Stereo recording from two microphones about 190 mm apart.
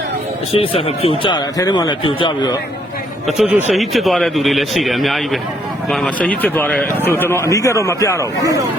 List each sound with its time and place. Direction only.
0.5 s speech: 30° left (ahead or behind)
3.2 s a man's voice: centre (ahead or behind); by 8.4 s 15° left (ahead or behind)